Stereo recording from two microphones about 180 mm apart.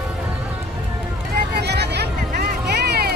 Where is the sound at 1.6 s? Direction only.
65° right (ahead or behind).